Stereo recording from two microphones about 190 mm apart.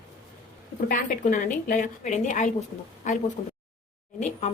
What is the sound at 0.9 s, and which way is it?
Speech, 45° left (ahead or behind).